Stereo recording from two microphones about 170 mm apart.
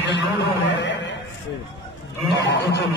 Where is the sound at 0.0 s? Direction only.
90° left.